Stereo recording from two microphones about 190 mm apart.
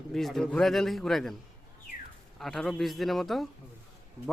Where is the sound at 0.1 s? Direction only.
Centre (ahead or behind).